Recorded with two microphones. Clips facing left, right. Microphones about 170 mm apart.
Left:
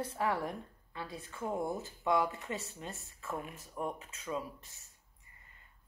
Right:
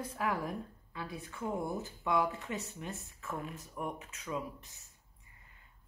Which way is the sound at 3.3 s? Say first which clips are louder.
Even; 20° left (ahead or behind).